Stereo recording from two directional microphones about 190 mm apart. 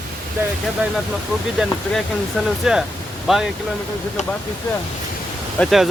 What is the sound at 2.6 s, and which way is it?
Speech, centre (ahead or behind).